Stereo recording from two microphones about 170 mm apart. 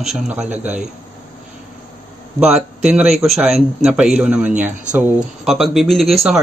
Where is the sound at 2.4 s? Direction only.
5° right (ahead or behind).